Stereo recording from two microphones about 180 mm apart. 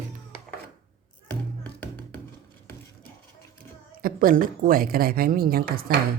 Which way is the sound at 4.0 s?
50° right (ahead or behind).